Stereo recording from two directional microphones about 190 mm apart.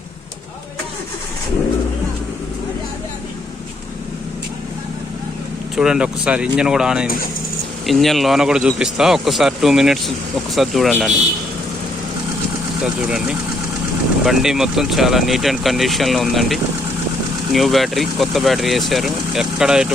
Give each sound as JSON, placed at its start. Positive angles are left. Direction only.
{"t": 5.7, "sound": "speech", "side_deg": -5}
{"t": 12.8, "sound": "speech", "side_deg": -5}